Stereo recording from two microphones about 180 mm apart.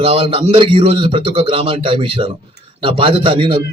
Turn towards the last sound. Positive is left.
turn(degrees=-30)  # may be behind; listen again after turning